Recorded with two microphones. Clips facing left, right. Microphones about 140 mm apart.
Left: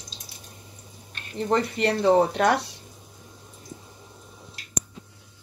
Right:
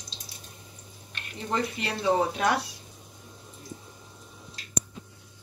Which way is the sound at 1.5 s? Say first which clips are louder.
Left 7 dB; 65° left (ahead or behind).